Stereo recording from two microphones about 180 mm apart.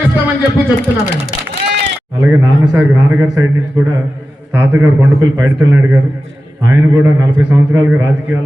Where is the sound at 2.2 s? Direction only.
10° right (ahead or behind).